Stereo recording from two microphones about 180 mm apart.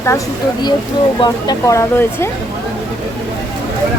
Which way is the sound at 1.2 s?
20° left (ahead or behind).